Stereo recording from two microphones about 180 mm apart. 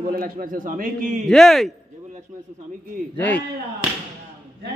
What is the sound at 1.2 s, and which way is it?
Speech, centre (ahead or behind).